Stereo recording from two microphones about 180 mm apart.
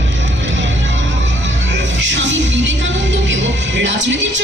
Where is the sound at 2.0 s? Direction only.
90° right.